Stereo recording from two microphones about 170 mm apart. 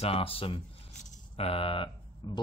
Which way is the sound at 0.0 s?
35° left (ahead or behind).